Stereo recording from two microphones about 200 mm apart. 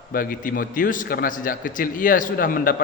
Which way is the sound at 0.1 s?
45° left (ahead or behind).